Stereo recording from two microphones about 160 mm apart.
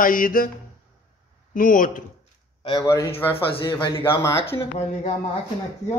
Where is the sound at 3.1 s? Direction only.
35° left (ahead or behind).